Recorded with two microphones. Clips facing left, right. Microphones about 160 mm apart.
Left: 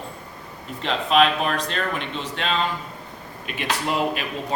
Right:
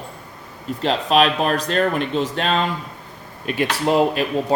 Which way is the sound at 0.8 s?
35° right (ahead or behind).